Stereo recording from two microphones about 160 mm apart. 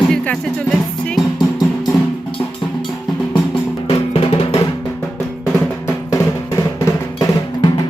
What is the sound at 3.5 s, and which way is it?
Music, 40° left (ahead or behind).